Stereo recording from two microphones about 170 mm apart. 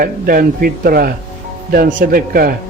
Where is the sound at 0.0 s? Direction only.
60° right (ahead or behind).